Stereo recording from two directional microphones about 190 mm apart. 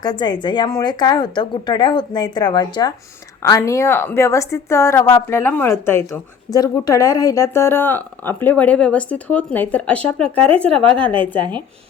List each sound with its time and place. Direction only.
0.0 s a woman's voice: 20° left (ahead or behind); by 11.0 s 5° left (ahead or behind)
11.3 s speech: 25° right (ahead or behind)